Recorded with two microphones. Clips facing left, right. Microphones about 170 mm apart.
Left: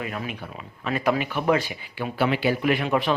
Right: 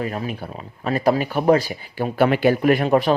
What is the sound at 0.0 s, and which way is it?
Speech, 35° right (ahead or behind).